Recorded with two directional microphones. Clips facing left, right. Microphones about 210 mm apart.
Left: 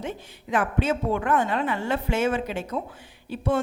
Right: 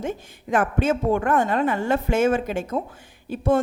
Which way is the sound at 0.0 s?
45° right (ahead or behind).